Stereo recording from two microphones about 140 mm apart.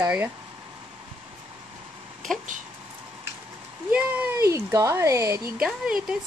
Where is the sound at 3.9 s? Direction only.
15° right (ahead or behind).